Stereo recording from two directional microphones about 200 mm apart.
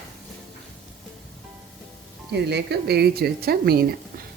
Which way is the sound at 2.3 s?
55° right (ahead or behind).